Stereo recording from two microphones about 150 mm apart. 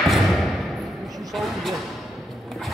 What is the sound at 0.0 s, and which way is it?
Thump, centre (ahead or behind).